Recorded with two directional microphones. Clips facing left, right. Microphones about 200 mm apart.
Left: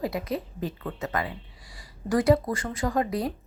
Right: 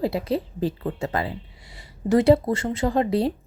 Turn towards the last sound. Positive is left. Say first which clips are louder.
# right 5 dB
turn(degrees=-30)  # may be behind; listen again after turning